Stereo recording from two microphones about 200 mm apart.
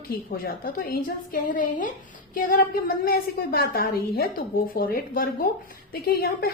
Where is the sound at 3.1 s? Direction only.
50° left (ahead or behind).